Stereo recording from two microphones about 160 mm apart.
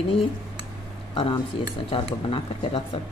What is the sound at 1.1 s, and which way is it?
Speech, 35° left (ahead or behind).